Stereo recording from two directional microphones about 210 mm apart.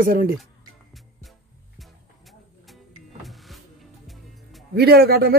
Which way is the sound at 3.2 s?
Centre (ahead or behind).